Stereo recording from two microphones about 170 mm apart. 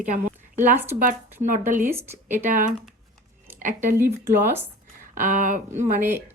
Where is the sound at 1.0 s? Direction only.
50° right (ahead or behind).